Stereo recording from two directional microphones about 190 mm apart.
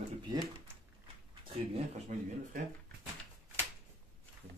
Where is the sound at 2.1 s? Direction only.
40° right (ahead or behind).